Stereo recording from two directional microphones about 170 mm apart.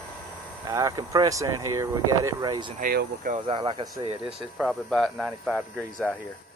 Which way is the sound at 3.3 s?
30° right (ahead or behind).